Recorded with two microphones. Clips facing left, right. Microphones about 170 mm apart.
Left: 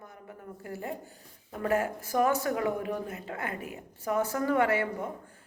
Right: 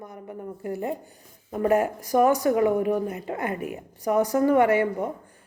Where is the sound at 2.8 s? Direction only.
45° right (ahead or behind).